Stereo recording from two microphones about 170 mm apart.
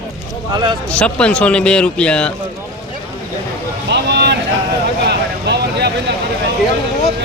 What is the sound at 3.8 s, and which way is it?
Vehicle, 90° right.